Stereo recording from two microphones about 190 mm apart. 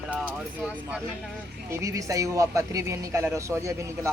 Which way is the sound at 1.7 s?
15° right (ahead or behind).